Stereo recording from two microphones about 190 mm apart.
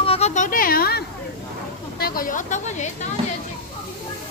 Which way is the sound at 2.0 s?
50° left (ahead or behind).